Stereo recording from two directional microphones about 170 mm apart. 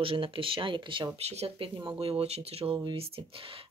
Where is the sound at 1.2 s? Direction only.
40° right (ahead or behind).